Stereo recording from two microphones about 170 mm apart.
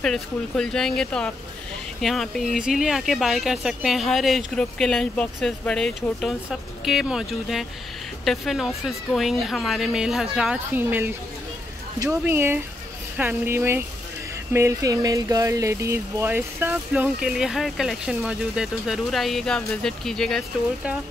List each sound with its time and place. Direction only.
0.0 s speech: 5° left (ahead or behind)